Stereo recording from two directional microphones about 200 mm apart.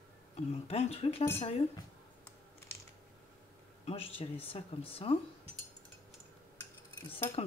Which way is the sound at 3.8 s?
30° left (ahead or behind).